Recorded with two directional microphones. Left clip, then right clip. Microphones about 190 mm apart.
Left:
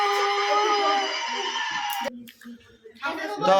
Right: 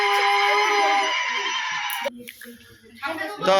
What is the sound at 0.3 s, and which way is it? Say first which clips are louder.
Music: right 3 dB; 25° left (ahead or behind).